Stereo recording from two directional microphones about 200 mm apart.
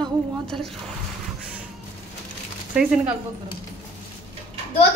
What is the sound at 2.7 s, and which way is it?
Speech, 5° right (ahead or behind).